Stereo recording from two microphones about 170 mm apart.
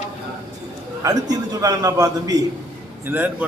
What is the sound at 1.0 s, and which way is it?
A man's voice, 20° right (ahead or behind).